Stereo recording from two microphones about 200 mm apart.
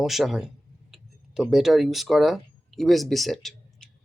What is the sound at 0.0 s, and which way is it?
Speech, centre (ahead or behind).